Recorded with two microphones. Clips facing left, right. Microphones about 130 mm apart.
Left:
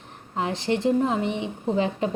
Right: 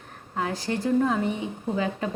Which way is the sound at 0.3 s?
25° left (ahead or behind).